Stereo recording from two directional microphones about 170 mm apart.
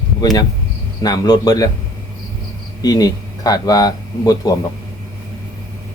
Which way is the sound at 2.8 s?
20° left (ahead or behind).